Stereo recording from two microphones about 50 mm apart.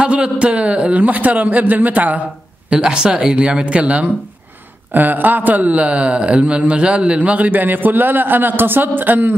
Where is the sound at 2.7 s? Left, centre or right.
Centre.